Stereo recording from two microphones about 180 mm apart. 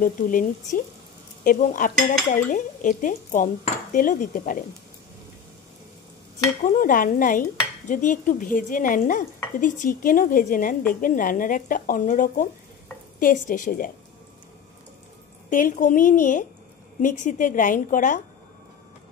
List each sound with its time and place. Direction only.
0.0 s stir: 50° left (ahead or behind)
6.6 s stir: 50° left (ahead or behind)
15.5 s stir: 45° left (ahead or behind)